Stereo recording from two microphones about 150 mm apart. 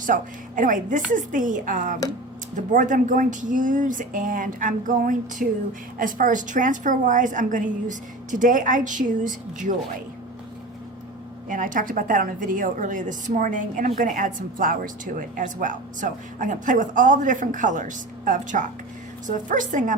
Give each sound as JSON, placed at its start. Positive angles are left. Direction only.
{"t": 0.0, "sound": "a woman's voice", "side_deg": -60}
{"t": 11.4, "sound": "a woman's voice", "side_deg": -60}